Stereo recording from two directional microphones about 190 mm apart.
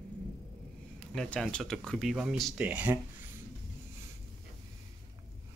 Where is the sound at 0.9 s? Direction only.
5° left (ahead or behind).